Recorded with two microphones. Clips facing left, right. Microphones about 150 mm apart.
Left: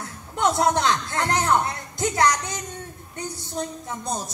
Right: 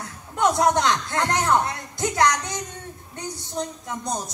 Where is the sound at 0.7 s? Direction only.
15° right (ahead or behind).